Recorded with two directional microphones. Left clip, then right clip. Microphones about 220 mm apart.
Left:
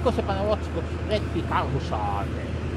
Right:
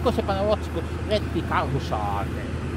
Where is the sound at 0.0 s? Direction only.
45° right (ahead or behind).